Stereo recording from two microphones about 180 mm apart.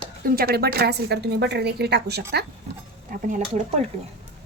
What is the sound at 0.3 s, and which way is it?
A woman's voice, 55° right (ahead or behind).